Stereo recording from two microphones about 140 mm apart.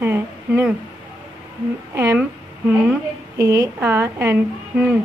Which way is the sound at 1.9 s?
20° right (ahead or behind).